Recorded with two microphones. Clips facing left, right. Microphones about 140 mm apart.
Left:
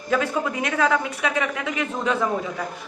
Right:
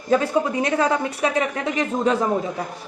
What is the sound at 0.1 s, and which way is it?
Speech, 35° right (ahead or behind).